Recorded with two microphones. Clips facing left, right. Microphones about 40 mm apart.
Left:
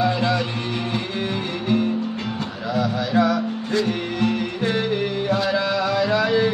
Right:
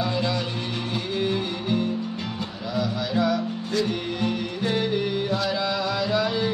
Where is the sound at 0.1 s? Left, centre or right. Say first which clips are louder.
Left 4 dB; left.